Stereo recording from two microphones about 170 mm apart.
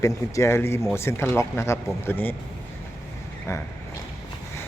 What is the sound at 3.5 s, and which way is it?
Speech, 15° left (ahead or behind).